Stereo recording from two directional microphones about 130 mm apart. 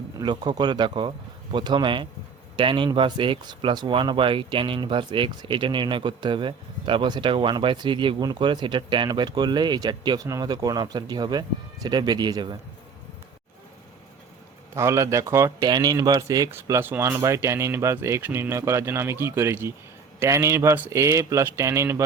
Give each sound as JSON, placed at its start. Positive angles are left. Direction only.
{"t": 0.2, "sound": "speech", "side_deg": -35}
{"t": 14.8, "sound": "a man's voice", "side_deg": -20}